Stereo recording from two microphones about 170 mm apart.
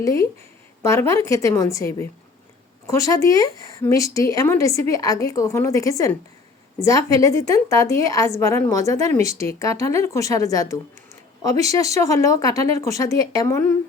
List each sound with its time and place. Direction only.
0.0 s a woman's voice: 20° left (ahead or behind)